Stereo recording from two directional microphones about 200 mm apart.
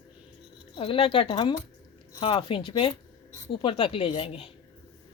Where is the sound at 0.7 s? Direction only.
25° left (ahead or behind).